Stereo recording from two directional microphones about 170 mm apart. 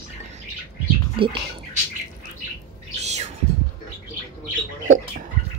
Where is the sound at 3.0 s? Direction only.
40° right (ahead or behind).